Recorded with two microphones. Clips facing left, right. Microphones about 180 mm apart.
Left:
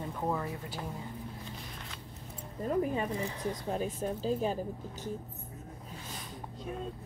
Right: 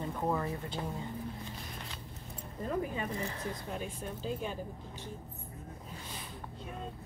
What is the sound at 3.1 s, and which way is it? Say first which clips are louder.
Speech: left 2 dB; 10° left (ahead or behind).